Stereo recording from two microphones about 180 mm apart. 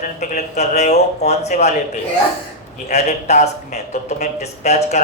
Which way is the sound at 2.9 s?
40° left (ahead or behind).